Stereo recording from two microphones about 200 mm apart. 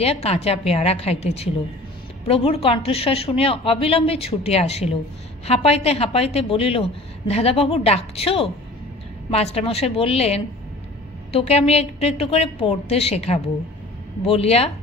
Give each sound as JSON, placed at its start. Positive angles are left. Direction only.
{"t": 0.0, "sound": "a woman's voice", "side_deg": 30}